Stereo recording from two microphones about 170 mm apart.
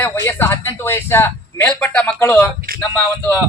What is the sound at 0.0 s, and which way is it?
A man's voice, 15° left (ahead or behind).